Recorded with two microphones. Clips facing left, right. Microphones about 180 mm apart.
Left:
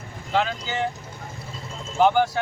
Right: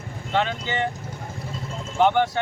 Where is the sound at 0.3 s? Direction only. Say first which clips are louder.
Even; 5° left (ahead or behind).